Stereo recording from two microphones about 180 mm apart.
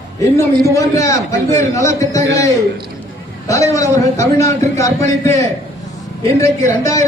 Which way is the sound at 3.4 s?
20° left (ahead or behind).